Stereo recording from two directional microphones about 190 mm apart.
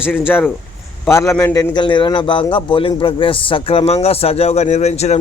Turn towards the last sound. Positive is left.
turn(degrees=35)  # may be behind; listen again after turning